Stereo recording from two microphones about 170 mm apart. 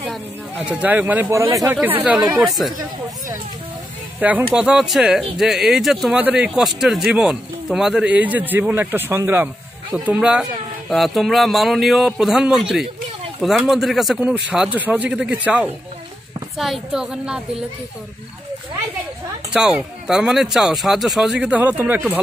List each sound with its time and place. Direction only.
0.7 s speech: 10° right (ahead or behind)
4.2 s speech: 10° right (ahead or behind)
19.5 s speech: 5° right (ahead or behind)